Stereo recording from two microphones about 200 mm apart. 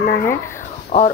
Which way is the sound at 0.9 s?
35° left (ahead or behind).